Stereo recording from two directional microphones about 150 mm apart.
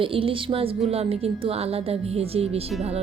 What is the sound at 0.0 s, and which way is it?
A woman's voice, 35° right (ahead or behind).